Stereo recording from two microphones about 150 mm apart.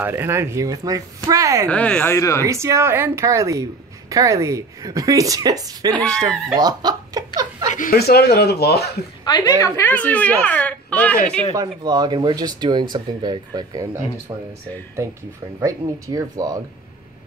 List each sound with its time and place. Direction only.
0.0 s a woman's voice: 15° right (ahead or behind)
1.7 s speech: 10° left (ahead or behind)
2.1 s speech: 20° left (ahead or behind)
2.4 s a woman's voice: 20° right (ahead or behind)
5.9 s speech: 5° left (ahead or behind)
6.2 s a woman's voice: 25° right (ahead or behind)
7.7 s speech: 60° left (ahead or behind)
8.1 s speech: 90° left
9.2 s speech: 25° left (ahead or behind); by 11.4 s 10° left (ahead or behind)
11.5 s a woman's voice: 30° right (ahead or behind)
15.6 s a woman's voice: 25° right (ahead or behind)